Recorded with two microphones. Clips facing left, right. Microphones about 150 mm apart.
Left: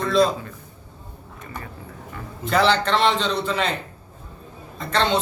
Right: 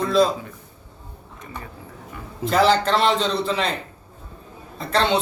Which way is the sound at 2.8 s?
5° right (ahead or behind).